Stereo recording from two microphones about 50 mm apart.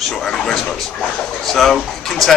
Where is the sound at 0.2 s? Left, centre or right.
Centre.